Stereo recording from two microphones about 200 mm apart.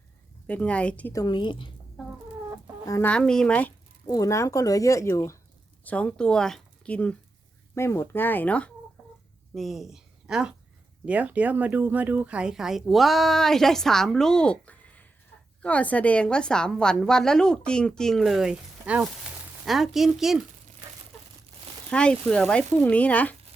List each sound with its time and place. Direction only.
0.4 s speech: 5° left (ahead or behind)
1.2 s a woman's voice: 20° left (ahead or behind)
2.0 s chicken: centre (ahead or behind)
2.8 s speech: 15° left (ahead or behind)
3.1 s speech: 5° left (ahead or behind)
4.0 s speech: 20° left (ahead or behind); by 20.4 s centre (ahead or behind)
21.8 s speech: 5° left (ahead or behind)